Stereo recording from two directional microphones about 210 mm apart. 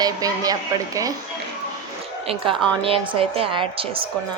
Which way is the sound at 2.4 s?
25° right (ahead or behind).